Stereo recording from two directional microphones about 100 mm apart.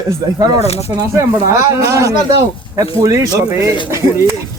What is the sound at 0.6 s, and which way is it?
Speech, 90° left.